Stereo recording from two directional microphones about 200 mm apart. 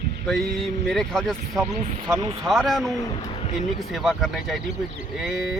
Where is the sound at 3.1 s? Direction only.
25° left (ahead or behind).